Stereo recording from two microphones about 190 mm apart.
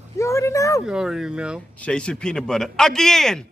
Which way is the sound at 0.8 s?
Centre (ahead or behind).